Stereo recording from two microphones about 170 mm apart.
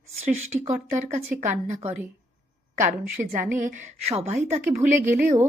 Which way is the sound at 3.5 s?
50° right (ahead or behind).